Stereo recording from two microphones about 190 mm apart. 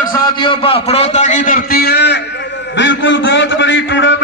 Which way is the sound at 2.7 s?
75° left (ahead or behind).